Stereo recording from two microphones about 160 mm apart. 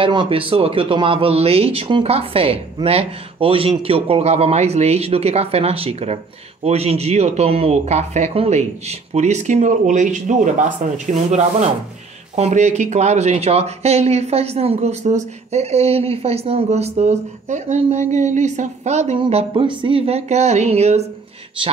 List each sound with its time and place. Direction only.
0.0 s speech: 30° right (ahead or behind)